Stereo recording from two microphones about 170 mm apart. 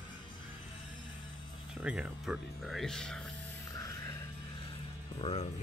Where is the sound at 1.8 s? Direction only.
10° right (ahead or behind).